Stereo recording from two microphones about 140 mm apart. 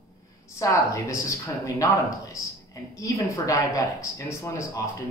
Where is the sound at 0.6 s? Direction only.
20° left (ahead or behind).